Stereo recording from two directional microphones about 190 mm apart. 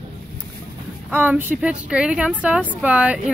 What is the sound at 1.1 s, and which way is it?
A woman's voice, 10° right (ahead or behind).